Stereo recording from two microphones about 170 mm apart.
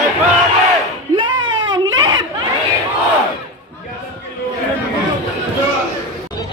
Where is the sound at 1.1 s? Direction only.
25° right (ahead or behind).